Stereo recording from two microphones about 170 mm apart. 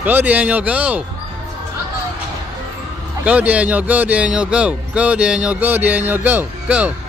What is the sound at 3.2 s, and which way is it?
Speech, 10° right (ahead or behind).